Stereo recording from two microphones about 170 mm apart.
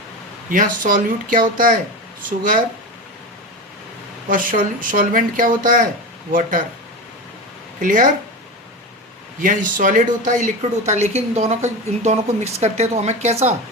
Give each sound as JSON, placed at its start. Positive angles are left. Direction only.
{"t": 0.5, "sound": "speech", "side_deg": -50}
{"t": 4.3, "sound": "speech", "side_deg": -50}
{"t": 7.8, "sound": "speech", "side_deg": -50}
{"t": 9.4, "sound": "speech", "side_deg": -50}